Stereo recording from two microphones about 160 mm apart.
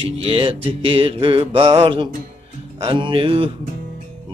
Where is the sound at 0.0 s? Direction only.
35° right (ahead or behind).